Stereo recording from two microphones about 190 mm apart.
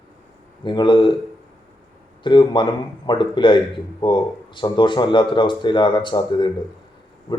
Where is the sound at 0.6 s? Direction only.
25° left (ahead or behind).